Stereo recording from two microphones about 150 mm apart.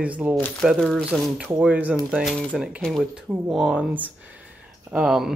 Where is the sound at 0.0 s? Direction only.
10° right (ahead or behind).